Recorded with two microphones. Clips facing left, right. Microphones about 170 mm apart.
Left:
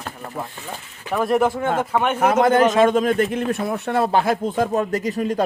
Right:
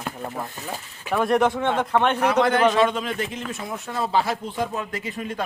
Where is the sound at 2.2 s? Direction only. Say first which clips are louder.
Left 6 dB; 45° left (ahead or behind).